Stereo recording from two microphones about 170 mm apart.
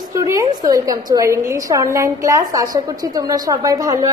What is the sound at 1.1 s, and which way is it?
A woman's voice, 15° right (ahead or behind).